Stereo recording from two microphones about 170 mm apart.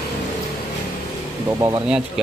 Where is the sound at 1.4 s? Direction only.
15° right (ahead or behind).